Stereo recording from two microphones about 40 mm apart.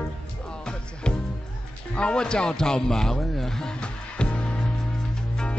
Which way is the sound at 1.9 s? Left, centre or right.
Left.